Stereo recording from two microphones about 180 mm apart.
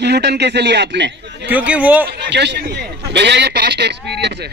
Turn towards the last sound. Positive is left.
turn(degrees=-70)  # may be behind; listen again after turning